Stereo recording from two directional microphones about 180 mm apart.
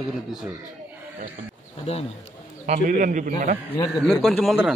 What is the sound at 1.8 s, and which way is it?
Speech, 35° left (ahead or behind).